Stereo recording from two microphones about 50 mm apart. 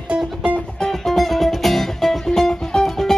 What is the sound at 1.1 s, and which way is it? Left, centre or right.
Music, centre.